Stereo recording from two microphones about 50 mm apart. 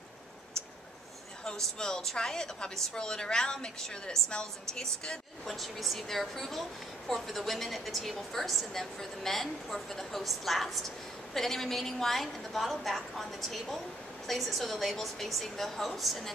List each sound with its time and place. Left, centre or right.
1.8 s a woman's voice: centre